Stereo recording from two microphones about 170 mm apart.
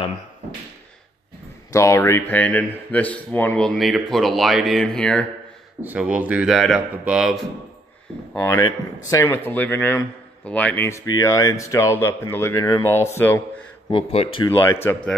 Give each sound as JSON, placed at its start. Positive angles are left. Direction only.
{"t": 1.7, "sound": "speech", "side_deg": 20}
{"t": 5.8, "sound": "a man's voice", "side_deg": -10}
{"t": 8.3, "sound": "speech", "side_deg": 15}
{"t": 13.8, "sound": "speech", "side_deg": 30}
{"t": 14.6, "sound": "speech", "side_deg": 15}